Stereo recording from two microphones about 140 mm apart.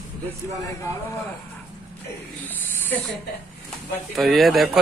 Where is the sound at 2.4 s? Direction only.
15° left (ahead or behind).